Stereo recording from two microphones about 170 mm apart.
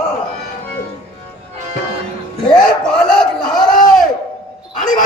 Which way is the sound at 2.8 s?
5° left (ahead or behind).